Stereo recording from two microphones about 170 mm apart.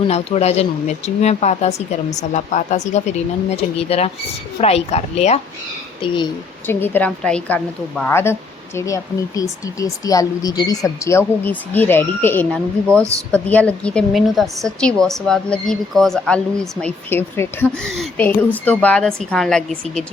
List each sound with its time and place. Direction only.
0.1 s speech: 40° left (ahead or behind)
6.7 s a woman's voice: 10° left (ahead or behind)
12.9 s a woman's voice: 15° right (ahead or behind)
13.3 s a woman's voice: 5° left (ahead or behind)